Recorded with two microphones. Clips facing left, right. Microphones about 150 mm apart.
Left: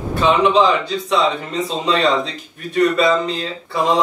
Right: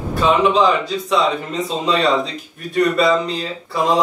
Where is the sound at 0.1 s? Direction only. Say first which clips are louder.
Left 1 dB; centre (ahead or behind).